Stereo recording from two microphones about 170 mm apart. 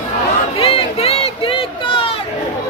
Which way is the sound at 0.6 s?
35° left (ahead or behind).